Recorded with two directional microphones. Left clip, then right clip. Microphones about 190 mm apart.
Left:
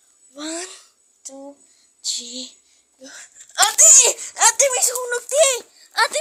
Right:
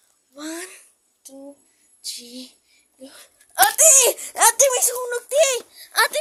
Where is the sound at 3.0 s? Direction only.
20° right (ahead or behind).